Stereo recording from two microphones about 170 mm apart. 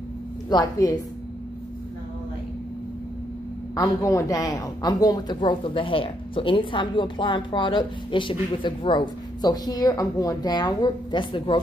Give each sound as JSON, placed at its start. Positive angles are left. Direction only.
{"t": 0.5, "sound": "a woman's voice", "side_deg": 25}
{"t": 3.7, "sound": "a woman's voice", "side_deg": 20}